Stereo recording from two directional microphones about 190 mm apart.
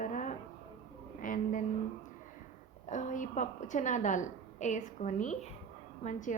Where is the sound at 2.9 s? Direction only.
40° left (ahead or behind).